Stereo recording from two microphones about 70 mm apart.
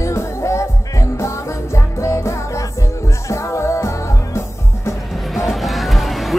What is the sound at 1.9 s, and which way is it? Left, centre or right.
Music, left.